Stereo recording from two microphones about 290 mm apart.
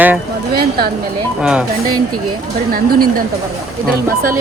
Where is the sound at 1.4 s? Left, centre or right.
Centre.